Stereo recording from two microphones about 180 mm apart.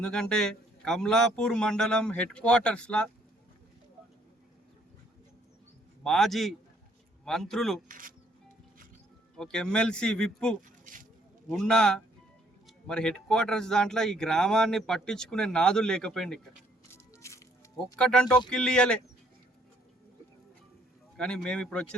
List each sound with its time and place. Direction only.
0.0 s speech: 5° left (ahead or behind)
6.0 s speech: centre (ahead or behind)
7.9 s speech: 50° right (ahead or behind)
9.4 s speech: 5° left (ahead or behind)
16.9 s music: 15° left (ahead or behind)
17.9 s speech: 5° left (ahead or behind)
21.2 s speech: 5° left (ahead or behind)